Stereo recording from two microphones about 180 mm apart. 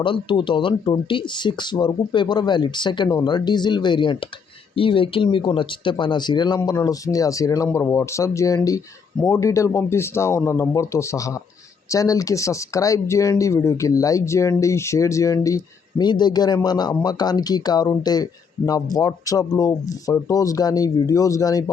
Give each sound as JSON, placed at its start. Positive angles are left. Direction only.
{"t": 0.0, "sound": "speech", "side_deg": 25}